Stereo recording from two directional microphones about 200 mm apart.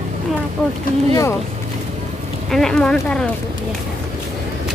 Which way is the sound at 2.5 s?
5° left (ahead or behind).